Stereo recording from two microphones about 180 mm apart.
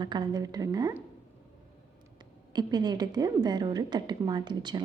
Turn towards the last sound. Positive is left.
turn(degrees=-25)  # may be behind; listen again after turning